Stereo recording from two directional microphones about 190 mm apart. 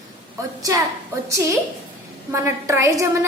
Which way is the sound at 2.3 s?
15° right (ahead or behind).